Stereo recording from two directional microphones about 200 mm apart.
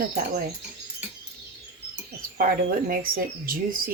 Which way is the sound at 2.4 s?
45° right (ahead or behind).